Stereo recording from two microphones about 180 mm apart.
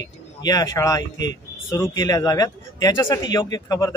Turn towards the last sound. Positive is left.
turn(degrees=20)  # may be behind; listen again after turning